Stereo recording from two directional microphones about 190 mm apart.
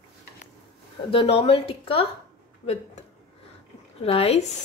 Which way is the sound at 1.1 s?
30° left (ahead or behind).